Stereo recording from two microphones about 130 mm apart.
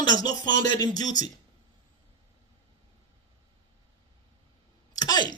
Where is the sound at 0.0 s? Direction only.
30° left (ahead or behind).